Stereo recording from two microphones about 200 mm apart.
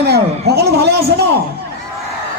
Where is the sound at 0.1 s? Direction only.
55° right (ahead or behind).